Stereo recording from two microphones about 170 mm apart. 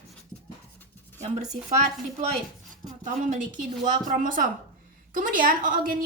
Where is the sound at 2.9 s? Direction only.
45° right (ahead or behind).